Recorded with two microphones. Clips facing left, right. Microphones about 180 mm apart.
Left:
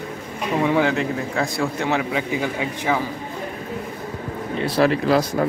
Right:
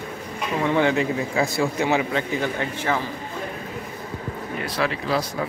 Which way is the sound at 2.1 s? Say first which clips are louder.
Left 1 dB; 10° left (ahead or behind).